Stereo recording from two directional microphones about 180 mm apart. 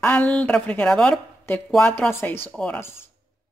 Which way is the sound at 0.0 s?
10° left (ahead or behind).